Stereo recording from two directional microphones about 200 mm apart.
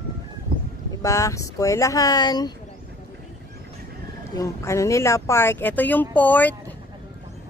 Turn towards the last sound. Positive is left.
turn(degrees=10)  # may be behind; listen again after turning